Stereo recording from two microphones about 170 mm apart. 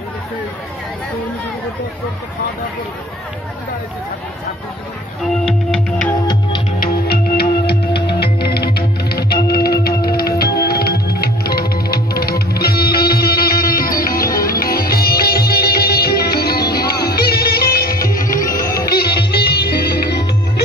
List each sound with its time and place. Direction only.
5.5 s music: centre (ahead or behind)
6.8 s music: 65° left (ahead or behind)
18.9 s music: 70° left (ahead or behind)